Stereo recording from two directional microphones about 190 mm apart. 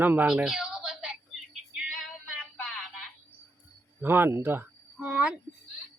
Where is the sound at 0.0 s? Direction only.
10° right (ahead or behind).